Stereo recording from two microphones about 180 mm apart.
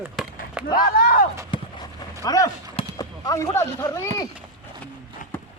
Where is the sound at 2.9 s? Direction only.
20° left (ahead or behind).